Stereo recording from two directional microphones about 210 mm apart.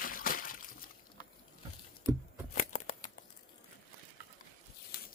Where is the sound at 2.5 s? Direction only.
35° left (ahead or behind).